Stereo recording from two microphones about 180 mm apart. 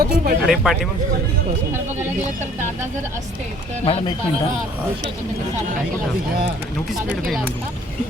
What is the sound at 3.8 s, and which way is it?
Speech, 30° left (ahead or behind).